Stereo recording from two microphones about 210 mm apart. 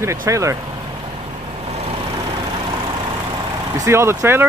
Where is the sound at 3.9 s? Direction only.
10° right (ahead or behind).